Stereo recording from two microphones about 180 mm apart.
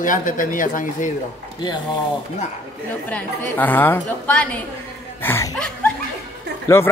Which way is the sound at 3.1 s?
10° left (ahead or behind).